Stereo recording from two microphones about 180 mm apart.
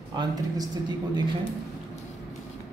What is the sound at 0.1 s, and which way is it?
A man's voice, 25° right (ahead or behind).